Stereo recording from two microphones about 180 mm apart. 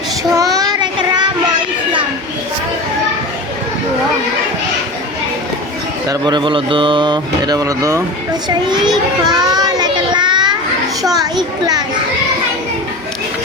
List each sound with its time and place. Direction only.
0.3 s child singing: 20° right (ahead or behind)
6.1 s speech: 25° right (ahead or behind)
9.2 s child singing: 20° right (ahead or behind)
11.0 s speech: 20° right (ahead or behind)